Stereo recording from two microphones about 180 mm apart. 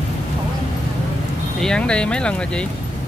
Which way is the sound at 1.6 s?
5° left (ahead or behind).